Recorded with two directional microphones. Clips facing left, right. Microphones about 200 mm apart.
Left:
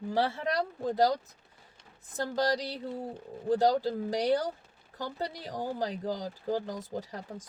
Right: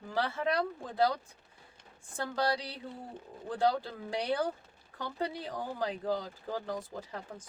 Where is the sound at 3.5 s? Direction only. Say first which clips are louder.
Left 5 dB; 40° left (ahead or behind).